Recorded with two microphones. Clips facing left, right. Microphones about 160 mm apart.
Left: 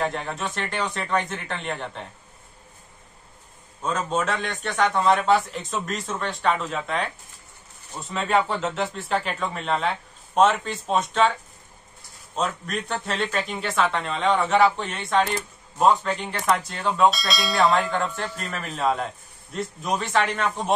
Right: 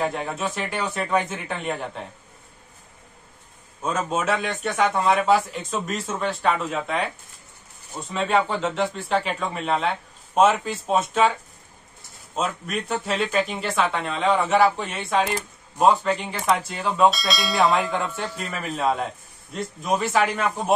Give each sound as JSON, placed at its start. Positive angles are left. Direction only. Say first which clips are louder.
{"t": 0.0, "sound": "a man's voice", "louder": "right 2 dB", "side_deg": -5}
{"t": 3.8, "sound": "a man's voice", "louder": "right 1 dB", "side_deg": -10}
{"t": 8.1, "sound": "a man's voice", "louder": "right 1 dB", "side_deg": 0}
{"t": 12.4, "sound": "a man's voice", "louder": "right 1 dB", "side_deg": -5}